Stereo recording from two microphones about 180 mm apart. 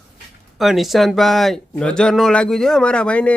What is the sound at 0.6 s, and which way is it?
Speech, centre (ahead or behind).